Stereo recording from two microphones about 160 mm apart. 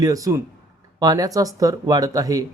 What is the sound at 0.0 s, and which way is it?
Speech, 20° right (ahead or behind).